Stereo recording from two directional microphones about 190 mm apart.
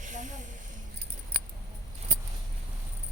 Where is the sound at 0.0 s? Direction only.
40° right (ahead or behind).